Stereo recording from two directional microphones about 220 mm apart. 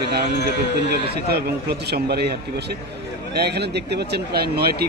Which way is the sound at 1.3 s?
45° right (ahead or behind).